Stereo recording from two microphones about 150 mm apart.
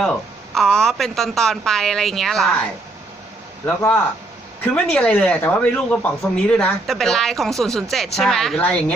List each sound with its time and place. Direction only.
0.0 s a woman's voice: centre (ahead or behind)
3.7 s a woman's voice: 15° left (ahead or behind)